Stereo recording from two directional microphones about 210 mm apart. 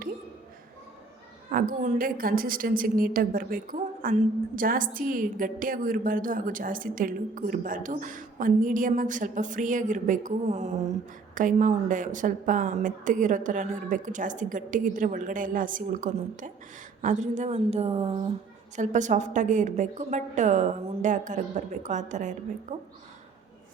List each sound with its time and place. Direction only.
1.5 s a woman's voice: 40° right (ahead or behind)